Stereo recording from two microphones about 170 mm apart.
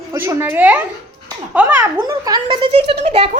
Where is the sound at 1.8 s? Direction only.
20° right (ahead or behind); by 3.3 s 40° right (ahead or behind).